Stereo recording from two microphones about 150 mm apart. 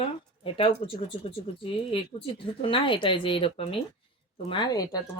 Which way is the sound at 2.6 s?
35° left (ahead or behind).